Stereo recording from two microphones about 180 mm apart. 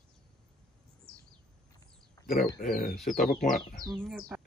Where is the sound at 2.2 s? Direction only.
15° left (ahead or behind).